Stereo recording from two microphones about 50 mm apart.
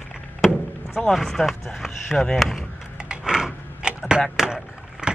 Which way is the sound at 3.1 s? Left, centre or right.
Centre.